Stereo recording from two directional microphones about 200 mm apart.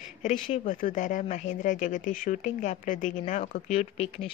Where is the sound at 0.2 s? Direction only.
40° left (ahead or behind).